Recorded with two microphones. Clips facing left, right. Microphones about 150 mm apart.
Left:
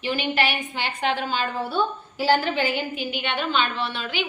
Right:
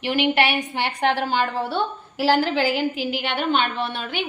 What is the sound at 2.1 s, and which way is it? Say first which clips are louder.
A woman's voice: right 2 dB; 90° right.